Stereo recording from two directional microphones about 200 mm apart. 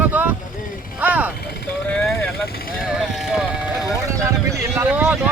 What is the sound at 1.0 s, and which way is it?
Vehicle, 10° right (ahead or behind).